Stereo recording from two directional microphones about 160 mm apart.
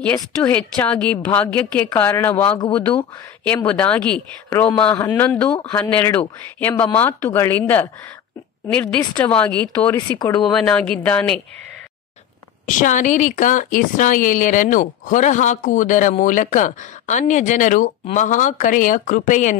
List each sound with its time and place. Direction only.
0.0 s speech: 10° left (ahead or behind)
10.1 s speech: 25° left (ahead or behind)
10.4 s speech: 5° left (ahead or behind)
12.6 s speech: 55° left (ahead or behind)